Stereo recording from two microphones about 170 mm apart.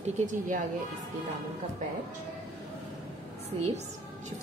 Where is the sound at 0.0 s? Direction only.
45° right (ahead or behind).